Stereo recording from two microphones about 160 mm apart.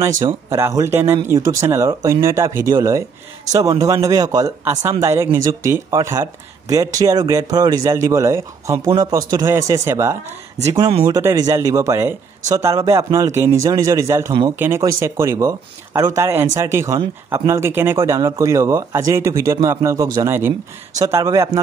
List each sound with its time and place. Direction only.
0.2 s speech: 15° right (ahead or behind)